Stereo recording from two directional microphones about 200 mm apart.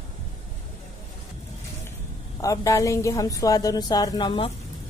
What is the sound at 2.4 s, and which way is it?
A woman's voice, 15° left (ahead or behind).